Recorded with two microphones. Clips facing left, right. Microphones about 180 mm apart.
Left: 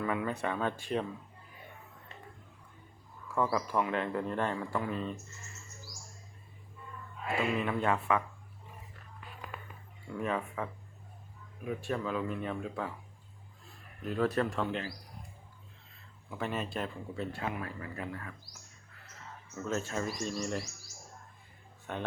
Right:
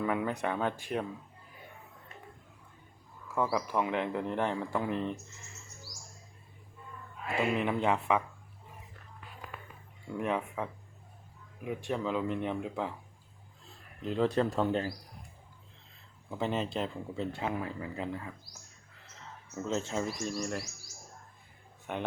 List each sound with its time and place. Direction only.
0.0 s speech: 15° right (ahead or behind)
3.3 s speech: 10° right (ahead or behind)
7.5 s speech: 20° right (ahead or behind)
10.2 s speech: 15° right (ahead or behind)
14.0 s speech: 25° right (ahead or behind)
16.3 s speech: 25° right (ahead or behind)
19.6 s speech: 20° right (ahead or behind)
20.4 s speech: 5° right (ahead or behind)
21.9 s speech: 15° right (ahead or behind)